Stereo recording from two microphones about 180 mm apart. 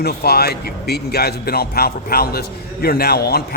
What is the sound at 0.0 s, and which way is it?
A man's voice, 60° left (ahead or behind).